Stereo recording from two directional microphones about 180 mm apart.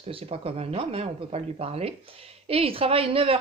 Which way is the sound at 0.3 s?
35° right (ahead or behind).